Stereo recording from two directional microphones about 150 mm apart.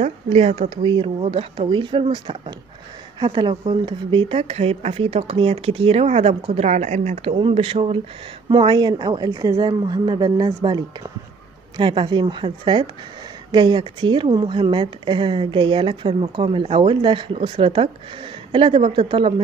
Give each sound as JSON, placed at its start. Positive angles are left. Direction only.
{"t": 0.0, "sound": "speech", "side_deg": -45}
{"t": 0.8, "sound": "speech", "side_deg": -35}